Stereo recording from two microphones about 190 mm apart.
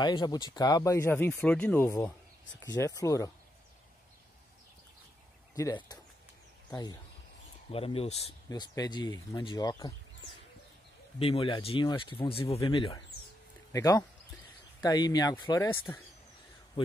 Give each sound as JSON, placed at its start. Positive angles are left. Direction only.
{"t": 0.0, "sound": "speech", "side_deg": 20}
{"t": 5.6, "sound": "speech", "side_deg": 20}
{"t": 7.7, "sound": "speech", "side_deg": 30}
{"t": 8.5, "sound": "speech", "side_deg": 20}
{"t": 11.1, "sound": "speech", "side_deg": 30}